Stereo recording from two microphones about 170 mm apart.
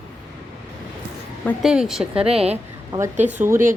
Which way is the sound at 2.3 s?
35° right (ahead or behind).